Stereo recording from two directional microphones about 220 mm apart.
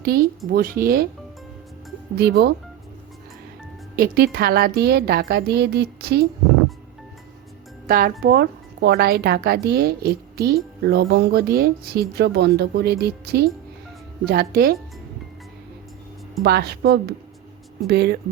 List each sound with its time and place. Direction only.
0.0 s speech: 45° right (ahead or behind)
2.1 s speech: 45° right (ahead or behind)
3.9 s speech: 40° right (ahead or behind)
7.9 s speech: 40° right (ahead or behind)
16.4 s speech: 45° right (ahead or behind)